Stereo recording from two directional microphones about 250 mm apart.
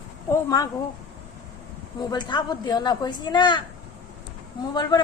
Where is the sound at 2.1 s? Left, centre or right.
Centre.